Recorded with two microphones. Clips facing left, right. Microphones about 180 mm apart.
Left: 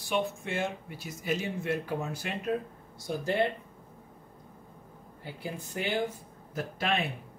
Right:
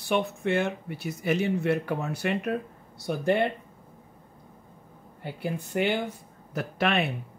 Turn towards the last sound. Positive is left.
turn(degrees=-70)  # may be behind; listen again after turning